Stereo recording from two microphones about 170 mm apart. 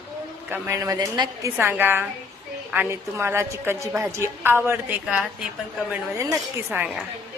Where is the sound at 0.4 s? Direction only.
10° right (ahead or behind).